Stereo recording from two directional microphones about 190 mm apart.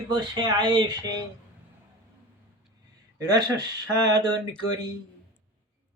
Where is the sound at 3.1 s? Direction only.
20° right (ahead or behind).